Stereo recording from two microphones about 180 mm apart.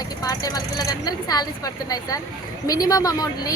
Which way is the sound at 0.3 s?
20° left (ahead or behind).